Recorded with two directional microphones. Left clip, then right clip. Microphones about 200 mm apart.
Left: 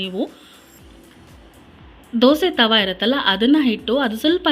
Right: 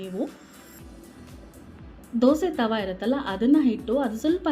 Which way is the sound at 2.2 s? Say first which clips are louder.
Left 7 dB; 10° left (ahead or behind).